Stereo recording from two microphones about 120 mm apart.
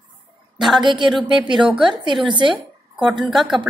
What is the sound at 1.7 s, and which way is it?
Speech, 5° right (ahead or behind).